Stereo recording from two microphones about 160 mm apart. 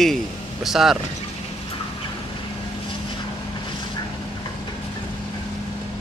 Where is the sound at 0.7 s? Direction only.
Centre (ahead or behind).